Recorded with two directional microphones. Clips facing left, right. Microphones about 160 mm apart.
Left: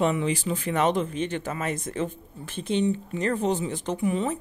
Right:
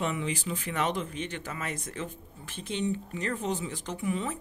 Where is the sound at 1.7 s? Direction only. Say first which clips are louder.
Left 8 dB; 20° left (ahead or behind).